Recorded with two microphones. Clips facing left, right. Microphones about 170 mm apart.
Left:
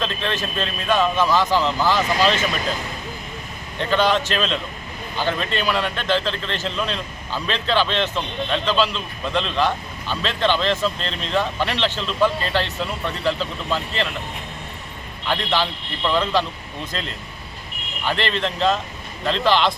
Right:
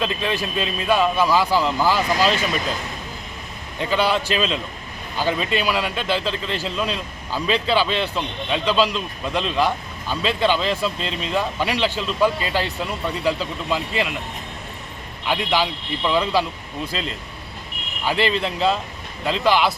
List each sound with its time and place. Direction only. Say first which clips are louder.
0.0 s speech: right 2 dB; 10° right (ahead or behind)
3.8 s speech: left 1 dB; 10° right (ahead or behind)
15.3 s speech: right 1 dB; 10° right (ahead or behind)
18.0 s speech: right 2 dB; 5° right (ahead or behind)